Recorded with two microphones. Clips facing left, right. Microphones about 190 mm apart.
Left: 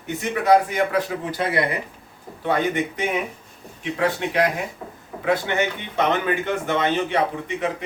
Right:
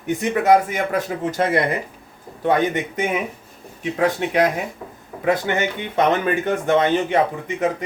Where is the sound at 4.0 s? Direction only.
45° right (ahead or behind).